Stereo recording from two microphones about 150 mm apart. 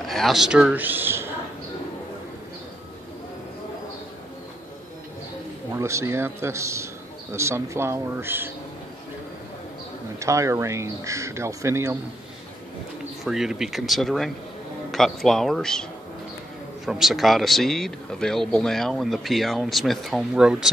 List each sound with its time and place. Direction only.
0.0 s a man's voice: centre (ahead or behind); by 1.3 s 15° right (ahead or behind)
5.8 s speech: 20° right (ahead or behind)
10.1 s speech: 20° right (ahead or behind)
13.2 s a man's voice: 5° right (ahead or behind)